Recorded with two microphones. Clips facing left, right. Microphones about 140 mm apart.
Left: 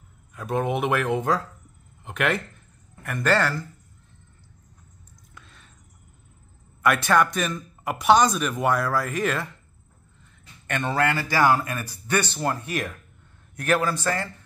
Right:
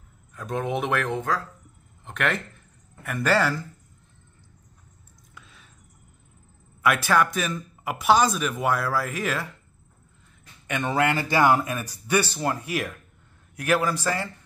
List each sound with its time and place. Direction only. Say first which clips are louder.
0.3 s speech: left 2 dB; 5° left (ahead or behind)
5.3 s a sound: even; 5° right (ahead or behind)
6.8 s speech: left 1 dB; 5° right (ahead or behind)
10.7 s speech: even; 15° right (ahead or behind)